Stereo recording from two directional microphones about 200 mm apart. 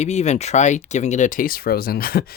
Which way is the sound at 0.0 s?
35° left (ahead or behind).